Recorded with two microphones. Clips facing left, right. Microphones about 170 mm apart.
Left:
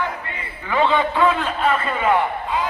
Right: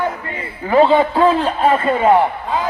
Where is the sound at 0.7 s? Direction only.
40° right (ahead or behind).